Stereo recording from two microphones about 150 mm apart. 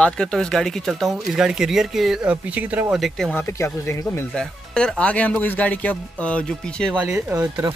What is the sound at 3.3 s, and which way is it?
Speech, 20° left (ahead or behind).